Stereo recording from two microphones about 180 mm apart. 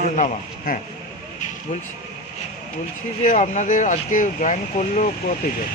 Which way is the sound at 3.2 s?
40° left (ahead or behind).